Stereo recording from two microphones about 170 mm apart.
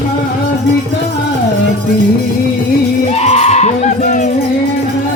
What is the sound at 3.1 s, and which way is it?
Music, 40° left (ahead or behind).